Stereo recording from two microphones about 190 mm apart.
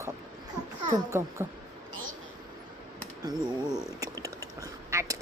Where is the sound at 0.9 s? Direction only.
15° right (ahead or behind).